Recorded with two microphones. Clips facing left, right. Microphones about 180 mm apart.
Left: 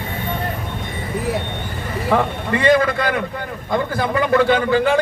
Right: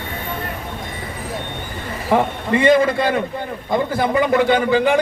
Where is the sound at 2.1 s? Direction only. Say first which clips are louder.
Right 2 dB; 20° right (ahead or behind).